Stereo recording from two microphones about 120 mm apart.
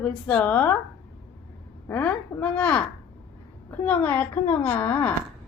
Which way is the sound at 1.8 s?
10° left (ahead or behind).